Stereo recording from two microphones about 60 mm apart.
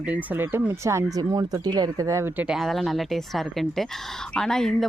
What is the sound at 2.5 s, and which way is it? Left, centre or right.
Speech, centre.